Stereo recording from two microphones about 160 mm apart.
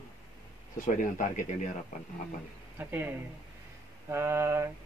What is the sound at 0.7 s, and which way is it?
Speech, 55° left (ahead or behind).